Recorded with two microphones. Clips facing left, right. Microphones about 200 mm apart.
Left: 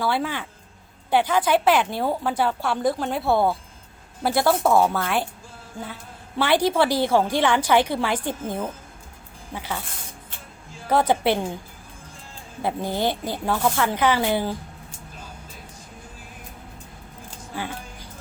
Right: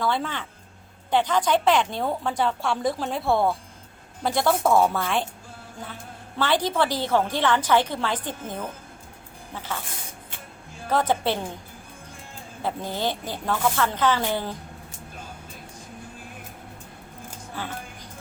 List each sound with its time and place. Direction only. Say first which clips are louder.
0.0 s a woman's voice: left 2 dB; 5° left (ahead or behind)
6.4 s a woman's voice: left 3 dB; 10° left (ahead or behind)
10.8 s a woman's voice: left 3 dB; 10° left (ahead or behind)
12.6 s a woman's voice: left 3 dB; 15° left (ahead or behind)
17.5 s speech: left 3 dB; 15° left (ahead or behind)